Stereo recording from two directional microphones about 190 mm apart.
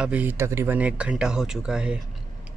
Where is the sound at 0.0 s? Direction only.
10° right (ahead or behind).